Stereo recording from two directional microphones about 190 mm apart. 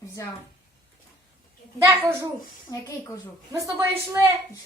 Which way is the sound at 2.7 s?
20° left (ahead or behind).